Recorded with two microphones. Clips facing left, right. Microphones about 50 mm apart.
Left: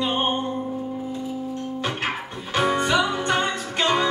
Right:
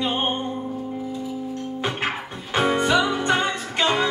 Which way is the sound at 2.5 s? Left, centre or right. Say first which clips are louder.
Right 1 dB; right.